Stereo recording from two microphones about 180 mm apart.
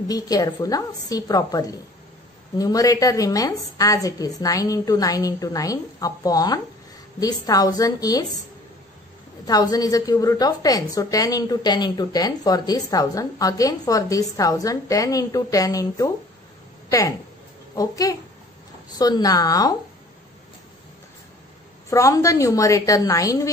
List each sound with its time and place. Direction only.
0.1 s a woman's voice: 20° left (ahead or behind)
9.5 s a woman's voice: 20° left (ahead or behind)
17.7 s a woman's voice: 20° left (ahead or behind)
21.9 s a woman's voice: 15° left (ahead or behind)